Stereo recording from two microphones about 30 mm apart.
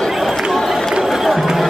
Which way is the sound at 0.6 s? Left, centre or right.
Centre.